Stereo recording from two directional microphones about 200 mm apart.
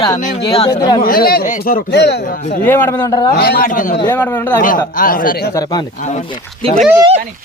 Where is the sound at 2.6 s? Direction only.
10° left (ahead or behind).